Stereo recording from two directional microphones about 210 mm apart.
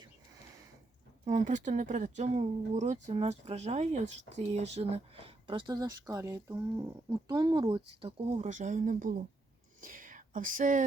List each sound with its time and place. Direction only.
1.2 s speech: 35° right (ahead or behind)
8.2 s speech: 30° right (ahead or behind)